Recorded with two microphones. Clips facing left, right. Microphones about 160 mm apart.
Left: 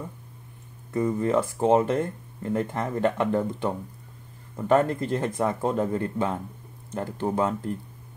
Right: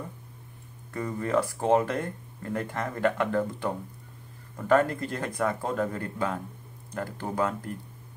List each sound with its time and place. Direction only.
0.9 s speech: 20° left (ahead or behind)